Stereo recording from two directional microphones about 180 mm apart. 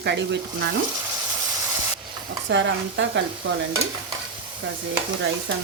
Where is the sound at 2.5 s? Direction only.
90° right.